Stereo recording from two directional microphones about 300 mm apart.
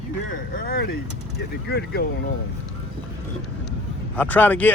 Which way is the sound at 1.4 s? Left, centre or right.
Left.